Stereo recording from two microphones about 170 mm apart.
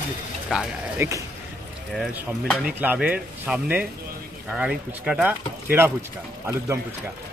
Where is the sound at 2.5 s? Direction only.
5° right (ahead or behind).